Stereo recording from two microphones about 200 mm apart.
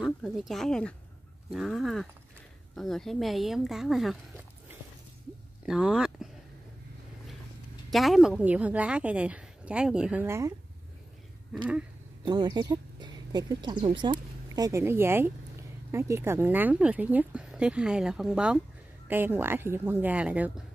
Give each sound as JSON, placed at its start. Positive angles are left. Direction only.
{"t": 0.0, "sound": "speech", "side_deg": 0}
{"t": 5.7, "sound": "speech", "side_deg": -5}
{"t": 7.9, "sound": "speech", "side_deg": 0}
{"t": 11.5, "sound": "speech", "side_deg": -5}
{"t": 12.3, "sound": "speech", "side_deg": -20}